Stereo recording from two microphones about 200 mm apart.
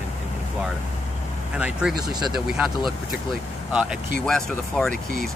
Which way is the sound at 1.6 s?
5° right (ahead or behind).